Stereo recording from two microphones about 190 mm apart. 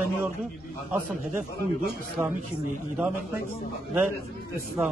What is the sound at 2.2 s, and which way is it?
Speech, 15° right (ahead or behind).